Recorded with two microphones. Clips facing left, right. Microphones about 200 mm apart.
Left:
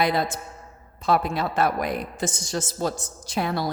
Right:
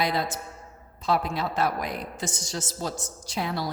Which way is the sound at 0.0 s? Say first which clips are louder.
Left 4 dB; 55° left (ahead or behind).